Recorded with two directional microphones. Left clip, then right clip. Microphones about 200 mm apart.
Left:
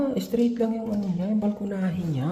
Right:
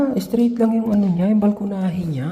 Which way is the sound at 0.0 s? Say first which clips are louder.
Right 5 dB; 20° right (ahead or behind).